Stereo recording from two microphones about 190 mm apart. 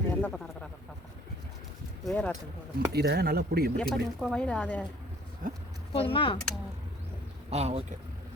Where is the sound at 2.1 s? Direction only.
5° left (ahead or behind).